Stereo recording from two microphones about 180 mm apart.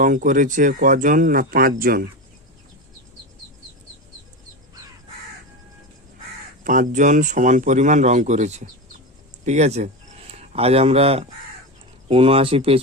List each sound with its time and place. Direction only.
0.0 s speech: 45° right (ahead or behind)
6.7 s speech: 45° right (ahead or behind)